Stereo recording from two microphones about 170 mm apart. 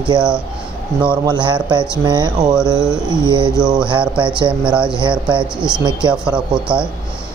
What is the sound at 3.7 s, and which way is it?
Speech, 5° right (ahead or behind).